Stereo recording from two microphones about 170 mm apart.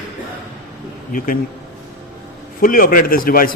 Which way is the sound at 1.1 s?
55° left (ahead or behind).